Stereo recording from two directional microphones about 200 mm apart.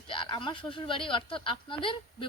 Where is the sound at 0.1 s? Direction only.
25° left (ahead or behind).